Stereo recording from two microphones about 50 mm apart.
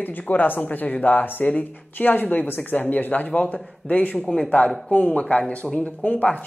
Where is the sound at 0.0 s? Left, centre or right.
Left.